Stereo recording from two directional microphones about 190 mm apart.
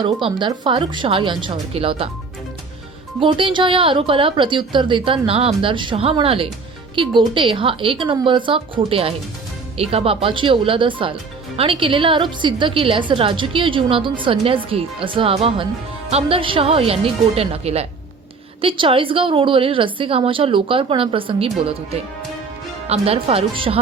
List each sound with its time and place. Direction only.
0.0 s speech: 25° right (ahead or behind)
3.2 s a woman's voice: 25° right (ahead or behind)
22.9 s a woman's voice: 30° right (ahead or behind)